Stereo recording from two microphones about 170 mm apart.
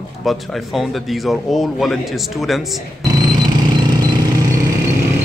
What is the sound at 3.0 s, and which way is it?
Music, 20° right (ahead or behind).